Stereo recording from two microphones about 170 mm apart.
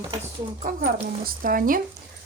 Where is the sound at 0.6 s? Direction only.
50° right (ahead or behind).